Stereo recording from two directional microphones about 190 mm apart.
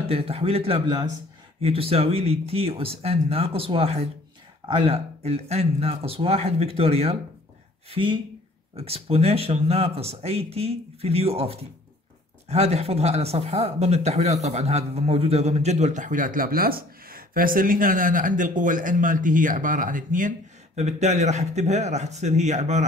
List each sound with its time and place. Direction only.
0.1 s speech: 30° right (ahead or behind)